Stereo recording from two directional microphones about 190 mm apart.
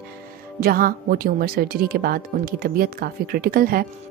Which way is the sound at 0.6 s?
50° right (ahead or behind).